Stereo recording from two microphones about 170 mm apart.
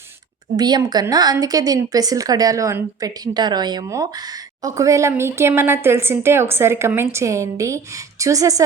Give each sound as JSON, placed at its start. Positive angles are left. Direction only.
{"t": 0.5, "sound": "a woman's voice", "side_deg": -25}